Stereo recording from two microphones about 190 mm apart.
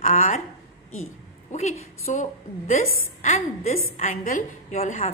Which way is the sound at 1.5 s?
35° left (ahead or behind).